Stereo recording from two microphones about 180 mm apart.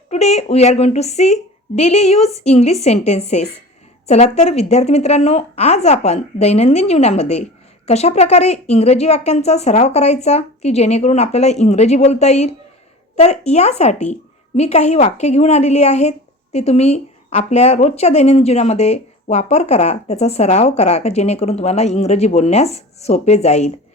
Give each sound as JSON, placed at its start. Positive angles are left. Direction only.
{"t": 0.1, "sound": "a woman's voice", "side_deg": 35}